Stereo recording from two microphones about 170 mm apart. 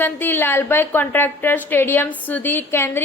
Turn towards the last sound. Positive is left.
turn(degrees=15)  # may be behind; listen again after turning